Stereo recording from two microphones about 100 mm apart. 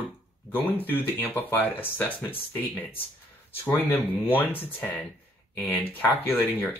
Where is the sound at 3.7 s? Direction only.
20° left (ahead or behind).